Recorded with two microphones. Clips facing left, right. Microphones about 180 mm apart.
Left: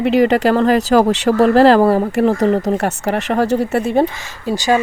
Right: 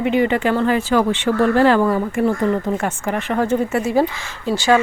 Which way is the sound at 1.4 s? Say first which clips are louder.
Left 5 dB; 90° left.